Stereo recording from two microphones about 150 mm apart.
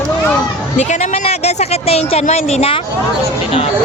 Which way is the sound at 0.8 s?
50° left (ahead or behind).